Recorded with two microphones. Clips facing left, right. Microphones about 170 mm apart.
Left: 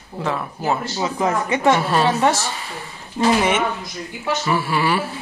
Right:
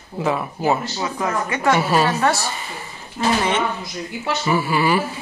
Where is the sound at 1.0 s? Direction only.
20° left (ahead or behind).